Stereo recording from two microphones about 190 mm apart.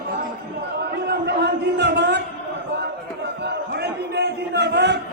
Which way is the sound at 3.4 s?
60° right (ahead or behind).